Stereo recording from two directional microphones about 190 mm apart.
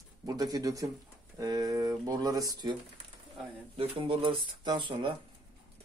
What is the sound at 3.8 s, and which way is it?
Speech, 30° right (ahead or behind).